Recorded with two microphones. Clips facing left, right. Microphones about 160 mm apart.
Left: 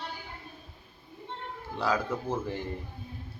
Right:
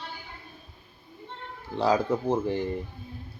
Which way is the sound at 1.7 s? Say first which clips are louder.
Right 6 dB; 30° right (ahead or behind).